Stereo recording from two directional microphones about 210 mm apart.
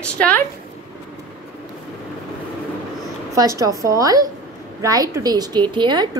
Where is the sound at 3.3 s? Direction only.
15° right (ahead or behind).